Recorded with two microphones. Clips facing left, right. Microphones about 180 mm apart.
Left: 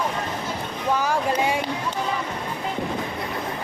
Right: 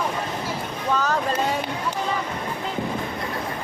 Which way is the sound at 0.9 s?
10° left (ahead or behind).